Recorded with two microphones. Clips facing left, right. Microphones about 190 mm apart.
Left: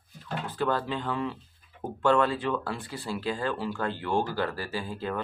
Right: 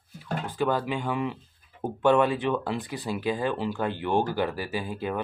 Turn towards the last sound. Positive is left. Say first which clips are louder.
# right 2 dB
turn(degrees=-15)  # may be behind; listen again after turning